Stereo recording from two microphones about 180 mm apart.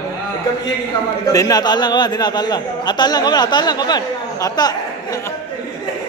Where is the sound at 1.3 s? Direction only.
20° left (ahead or behind).